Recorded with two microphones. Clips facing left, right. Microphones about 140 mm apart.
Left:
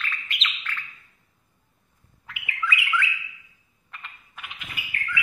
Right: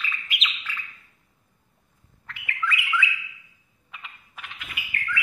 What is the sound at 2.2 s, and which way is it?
Bird, 10° left (ahead or behind).